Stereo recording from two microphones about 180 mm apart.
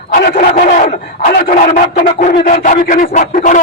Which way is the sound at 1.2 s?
50° left (ahead or behind).